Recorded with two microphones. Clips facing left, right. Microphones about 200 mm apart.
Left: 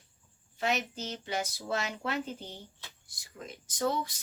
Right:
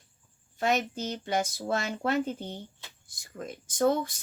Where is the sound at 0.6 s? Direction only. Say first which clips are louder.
Right 4 dB; 50° right (ahead or behind).